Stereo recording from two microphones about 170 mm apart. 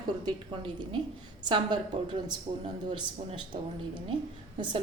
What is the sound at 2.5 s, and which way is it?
Speech, 40° right (ahead or behind).